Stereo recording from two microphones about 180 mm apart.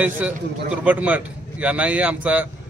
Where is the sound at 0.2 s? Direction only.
5° right (ahead or behind).